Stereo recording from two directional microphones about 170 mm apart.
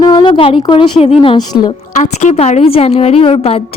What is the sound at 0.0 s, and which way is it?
A woman's voice, 25° left (ahead or behind).